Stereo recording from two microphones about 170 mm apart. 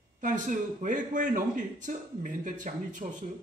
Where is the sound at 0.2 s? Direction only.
50° right (ahead or behind).